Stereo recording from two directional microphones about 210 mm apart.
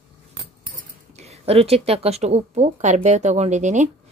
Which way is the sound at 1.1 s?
30° right (ahead or behind).